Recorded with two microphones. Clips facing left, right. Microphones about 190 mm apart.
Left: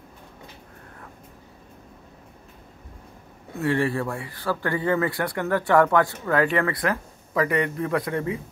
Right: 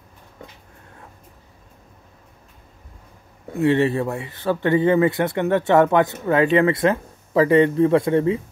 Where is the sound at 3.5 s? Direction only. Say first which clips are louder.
Right 5 dB; 20° right (ahead or behind).